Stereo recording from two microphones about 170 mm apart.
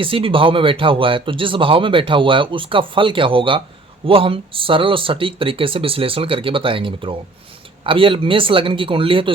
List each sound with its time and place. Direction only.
0.0 s speech: 30° right (ahead or behind)